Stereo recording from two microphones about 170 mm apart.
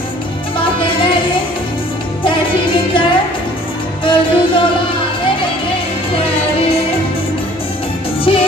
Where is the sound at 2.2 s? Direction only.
30° left (ahead or behind).